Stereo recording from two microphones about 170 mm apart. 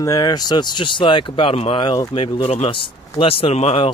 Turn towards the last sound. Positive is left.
turn(degrees=35)  # may be behind; listen again after turning